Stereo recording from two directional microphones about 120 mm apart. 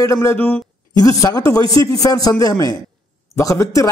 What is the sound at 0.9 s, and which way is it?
A man's voice, 30° left (ahead or behind).